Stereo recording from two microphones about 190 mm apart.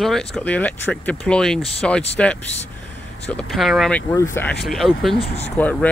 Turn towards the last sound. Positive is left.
turn(degrees=35)  # may be behind; listen again after turning